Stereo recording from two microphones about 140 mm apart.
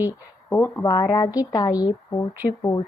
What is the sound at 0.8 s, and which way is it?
A woman's voice, 30° left (ahead or behind).